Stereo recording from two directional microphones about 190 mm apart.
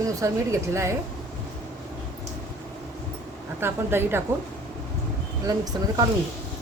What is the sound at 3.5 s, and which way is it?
Speech, 10° right (ahead or behind).